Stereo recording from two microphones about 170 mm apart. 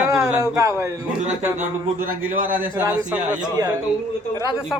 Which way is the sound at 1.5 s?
55° right (ahead or behind).